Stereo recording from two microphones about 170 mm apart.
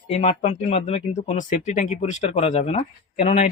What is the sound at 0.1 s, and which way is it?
Speech, 40° left (ahead or behind).